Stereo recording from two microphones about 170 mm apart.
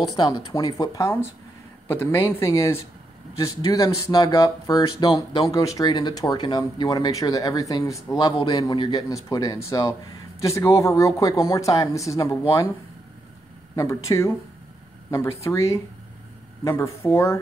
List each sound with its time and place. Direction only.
0.1 s speech: 25° left (ahead or behind)
13.7 s speech: 15° left (ahead or behind)